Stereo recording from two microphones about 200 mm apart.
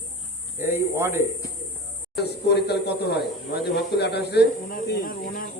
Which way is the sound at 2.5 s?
55° left (ahead or behind).